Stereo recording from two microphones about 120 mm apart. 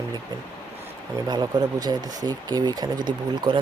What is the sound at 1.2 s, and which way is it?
Speech, 35° right (ahead or behind).